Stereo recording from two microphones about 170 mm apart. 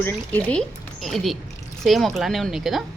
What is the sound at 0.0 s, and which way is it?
Speech, 10° left (ahead or behind).